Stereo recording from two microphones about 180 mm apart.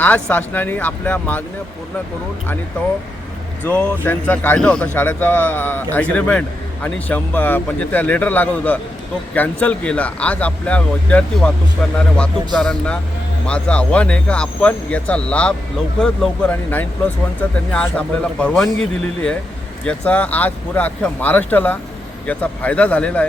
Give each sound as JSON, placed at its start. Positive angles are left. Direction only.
{"t": 0.0, "sound": "a man's voice", "side_deg": 10}
{"t": 3.6, "sound": "a man's voice", "side_deg": 10}